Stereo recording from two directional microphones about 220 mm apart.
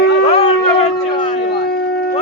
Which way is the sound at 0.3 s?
25° left (ahead or behind).